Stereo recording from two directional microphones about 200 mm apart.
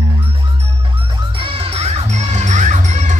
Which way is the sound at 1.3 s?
25° right (ahead or behind).